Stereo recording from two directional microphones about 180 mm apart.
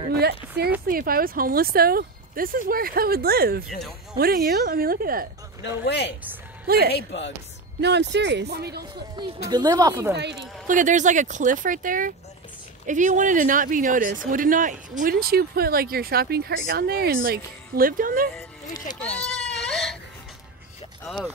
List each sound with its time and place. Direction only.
0.1 s a sound: 60° right (ahead or behind)
0.8 s speech: 55° right (ahead or behind)
5.6 s speech: 70° left (ahead or behind)
7.8 s speech: 70° right (ahead or behind)
9.2 s speech: 25° right (ahead or behind)
10.1 s speech: 70° right (ahead or behind)
10.7 s speech: 45° right (ahead or behind)
19.6 s crying: 5° left (ahead or behind)
21.0 s speech: 5° left (ahead or behind)